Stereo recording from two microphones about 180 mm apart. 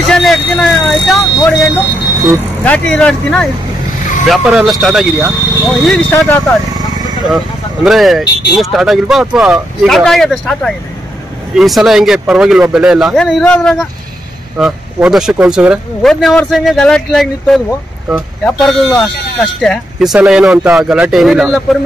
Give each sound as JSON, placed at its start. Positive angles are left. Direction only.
{"t": 0.1, "sound": "vehicle", "side_deg": 0}
{"t": 0.8, "sound": "speech", "side_deg": 0}
{"t": 1.4, "sound": "speech", "side_deg": 20}
{"t": 2.6, "sound": "speech", "side_deg": 5}
{"t": 6.1, "sound": "speech", "side_deg": 15}
{"t": 7.0, "sound": "a sound", "side_deg": -20}
{"t": 7.2, "sound": "speech", "side_deg": 0}